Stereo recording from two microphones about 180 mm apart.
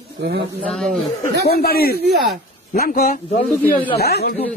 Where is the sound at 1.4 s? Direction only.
60° left (ahead or behind).